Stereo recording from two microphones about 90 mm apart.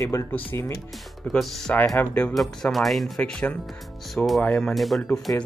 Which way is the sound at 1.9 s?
15° left (ahead or behind).